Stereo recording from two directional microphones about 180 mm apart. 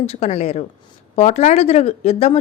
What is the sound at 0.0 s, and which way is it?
A woman's voice, 35° left (ahead or behind).